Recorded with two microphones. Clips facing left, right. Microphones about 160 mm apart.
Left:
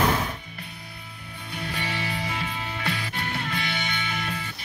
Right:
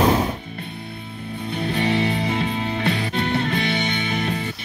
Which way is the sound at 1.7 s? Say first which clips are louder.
Right 11 dB; 20° right (ahead or behind).